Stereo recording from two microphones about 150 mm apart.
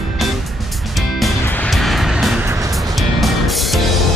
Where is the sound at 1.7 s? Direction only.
Centre (ahead or behind).